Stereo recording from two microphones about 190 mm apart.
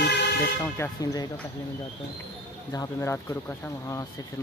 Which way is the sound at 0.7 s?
15° left (ahead or behind).